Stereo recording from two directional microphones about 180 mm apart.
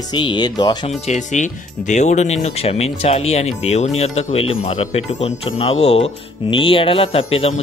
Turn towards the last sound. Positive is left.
turn(degrees=35)  # may be behind; listen again after turning